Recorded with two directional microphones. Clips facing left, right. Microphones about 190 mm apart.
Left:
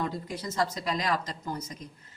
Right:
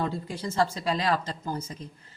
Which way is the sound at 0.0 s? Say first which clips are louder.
Right 2 dB; 30° right (ahead or behind).